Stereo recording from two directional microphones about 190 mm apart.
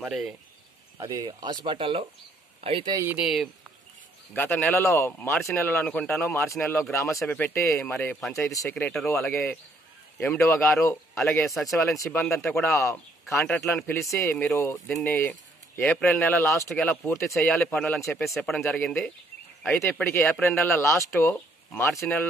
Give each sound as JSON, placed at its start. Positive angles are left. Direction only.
{"t": 0.0, "sound": "speech", "side_deg": -5}
{"t": 0.9, "sound": "speech", "side_deg": -20}
{"t": 3.1, "sound": "speech", "side_deg": -5}
{"t": 4.4, "sound": "speech", "side_deg": 10}
{"t": 8.4, "sound": "speech", "side_deg": 15}